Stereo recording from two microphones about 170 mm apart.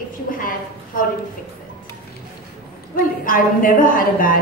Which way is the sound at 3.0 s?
55° left (ahead or behind).